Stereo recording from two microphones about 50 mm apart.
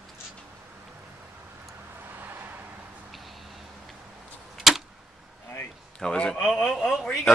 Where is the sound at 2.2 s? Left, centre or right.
Right.